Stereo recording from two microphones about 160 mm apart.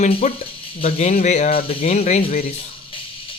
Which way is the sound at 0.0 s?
45° left (ahead or behind).